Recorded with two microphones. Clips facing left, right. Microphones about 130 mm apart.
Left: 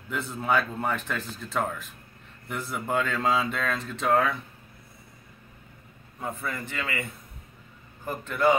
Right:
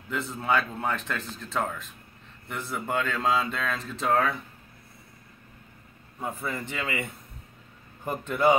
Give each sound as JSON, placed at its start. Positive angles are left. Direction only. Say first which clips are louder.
{"t": 0.1, "sound": "speech", "louder": "even", "side_deg": 0}
{"t": 6.1, "sound": "a man's voice", "louder": "even", "side_deg": -10}
{"t": 6.5, "sound": "a man's voice", "louder": "right 1 dB", "side_deg": -20}